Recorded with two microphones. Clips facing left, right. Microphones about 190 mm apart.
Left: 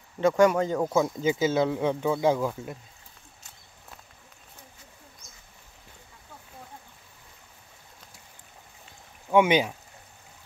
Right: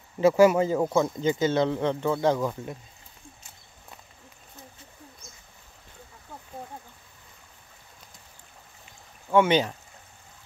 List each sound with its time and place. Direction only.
0.2 s speech: 5° right (ahead or behind)
0.9 s speech: 5° left (ahead or behind)
9.3 s speech: 10° left (ahead or behind)